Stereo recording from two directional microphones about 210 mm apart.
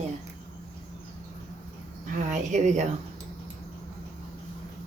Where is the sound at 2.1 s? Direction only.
35° right (ahead or behind).